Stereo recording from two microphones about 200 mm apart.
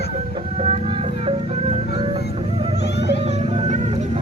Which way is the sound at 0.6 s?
25° right (ahead or behind).